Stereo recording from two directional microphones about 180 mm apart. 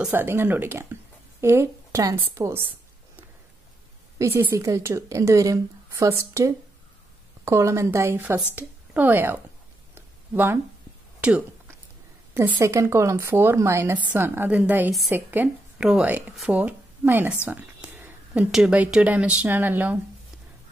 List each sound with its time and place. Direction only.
0.0 s a woman's voice: 10° right (ahead or behind)
4.2 s a woman's voice: 10° right (ahead or behind)
9.9 s a sound: 10° right (ahead or behind)
12.4 s a woman's voice: 15° right (ahead or behind)